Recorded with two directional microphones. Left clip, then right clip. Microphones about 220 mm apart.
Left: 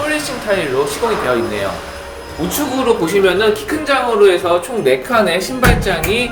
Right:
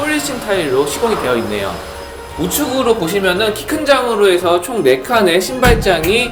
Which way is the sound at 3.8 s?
30° right (ahead or behind).